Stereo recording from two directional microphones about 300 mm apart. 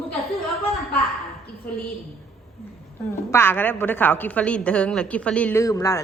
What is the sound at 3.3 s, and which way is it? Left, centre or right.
A woman's voice, centre.